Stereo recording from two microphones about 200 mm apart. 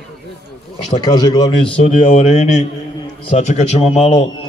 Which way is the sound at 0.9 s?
20° left (ahead or behind).